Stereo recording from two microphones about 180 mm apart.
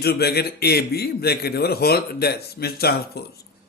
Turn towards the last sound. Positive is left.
turn(degrees=60)  # may be behind; listen again after turning